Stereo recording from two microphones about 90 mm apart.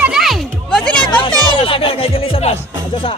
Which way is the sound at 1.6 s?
90° left.